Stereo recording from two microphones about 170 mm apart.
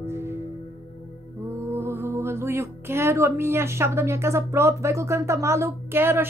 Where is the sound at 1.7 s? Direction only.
15° right (ahead or behind).